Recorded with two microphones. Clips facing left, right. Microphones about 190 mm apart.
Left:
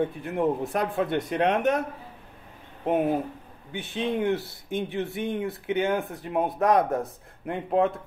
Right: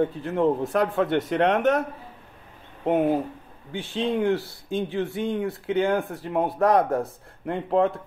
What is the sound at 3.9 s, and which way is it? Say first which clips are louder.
Speech: right 2 dB; 20° left (ahead or behind).